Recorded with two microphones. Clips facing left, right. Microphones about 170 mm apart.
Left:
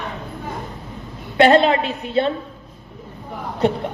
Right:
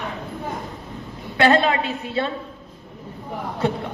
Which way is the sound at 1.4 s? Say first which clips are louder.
Left 4 dB; 25° left (ahead or behind).